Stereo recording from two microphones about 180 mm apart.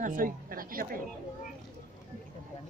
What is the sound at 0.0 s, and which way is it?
A woman's voice, 50° right (ahead or behind).